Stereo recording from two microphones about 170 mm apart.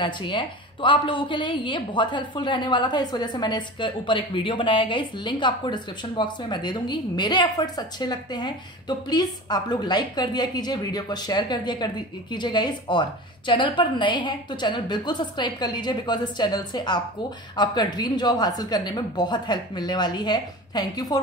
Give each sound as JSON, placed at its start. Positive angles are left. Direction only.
{"t": 0.0, "sound": "a woman's voice", "side_deg": 30}